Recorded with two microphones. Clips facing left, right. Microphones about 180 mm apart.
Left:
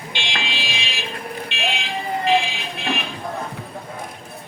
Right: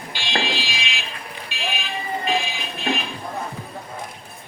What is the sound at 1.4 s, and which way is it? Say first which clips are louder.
Fire alarm: even; 70° left (ahead or behind).